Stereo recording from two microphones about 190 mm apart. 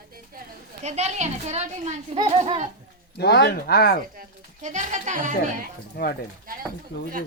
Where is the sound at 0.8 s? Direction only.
35° right (ahead or behind).